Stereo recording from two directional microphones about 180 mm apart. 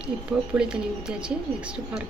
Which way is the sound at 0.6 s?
5° right (ahead or behind).